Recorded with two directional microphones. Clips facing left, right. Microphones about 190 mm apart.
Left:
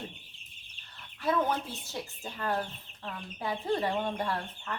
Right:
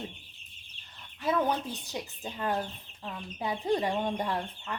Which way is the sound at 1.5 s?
15° right (ahead or behind).